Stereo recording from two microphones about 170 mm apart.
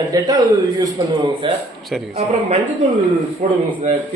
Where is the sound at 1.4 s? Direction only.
30° right (ahead or behind).